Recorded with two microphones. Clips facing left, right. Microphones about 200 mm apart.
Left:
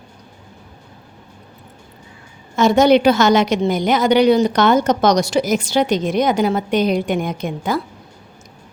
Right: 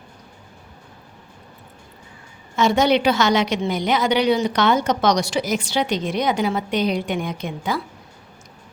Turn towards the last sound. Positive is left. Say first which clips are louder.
# left 4 dB
turn(degrees=45)  # may be behind; listen again after turning